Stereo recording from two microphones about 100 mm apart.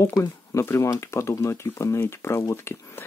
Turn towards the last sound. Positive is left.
turn(degrees=25)  # may be behind; listen again after turning